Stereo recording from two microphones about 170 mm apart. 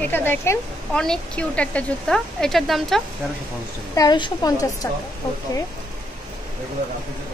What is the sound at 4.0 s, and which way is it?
Speech, 25° left (ahead or behind).